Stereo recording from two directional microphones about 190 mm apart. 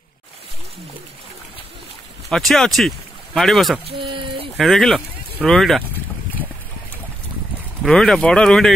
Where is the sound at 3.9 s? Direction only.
25° right (ahead or behind).